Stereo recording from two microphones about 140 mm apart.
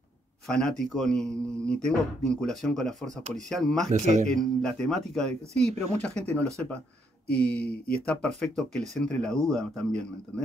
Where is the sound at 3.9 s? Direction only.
55° right (ahead or behind).